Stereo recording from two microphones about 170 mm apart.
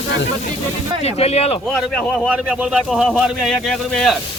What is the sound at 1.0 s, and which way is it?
Speech, 35° left (ahead or behind).